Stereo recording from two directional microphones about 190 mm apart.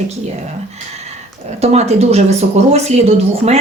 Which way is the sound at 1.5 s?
35° right (ahead or behind).